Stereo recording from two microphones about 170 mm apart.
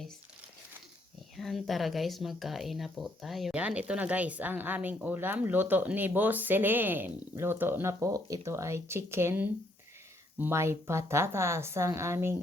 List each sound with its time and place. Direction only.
1.4 s speech: centre (ahead or behind); by 12.4 s 15° right (ahead or behind)